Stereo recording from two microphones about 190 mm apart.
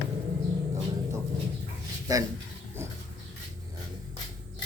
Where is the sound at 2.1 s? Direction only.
20° right (ahead or behind).